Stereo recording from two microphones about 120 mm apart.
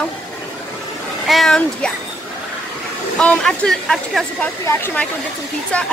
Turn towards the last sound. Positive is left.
turn(degrees=10)  # may be behind; listen again after turning